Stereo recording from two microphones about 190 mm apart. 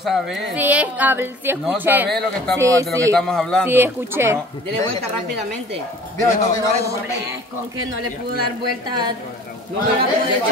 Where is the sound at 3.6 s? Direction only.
10° right (ahead or behind).